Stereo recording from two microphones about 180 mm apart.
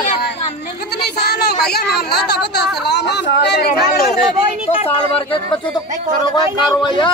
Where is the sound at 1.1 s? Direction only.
60° left (ahead or behind).